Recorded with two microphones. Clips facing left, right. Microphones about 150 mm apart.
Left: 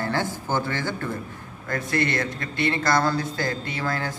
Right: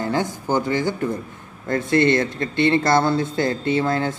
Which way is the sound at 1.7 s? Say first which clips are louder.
Right 8 dB; 25° right (ahead or behind).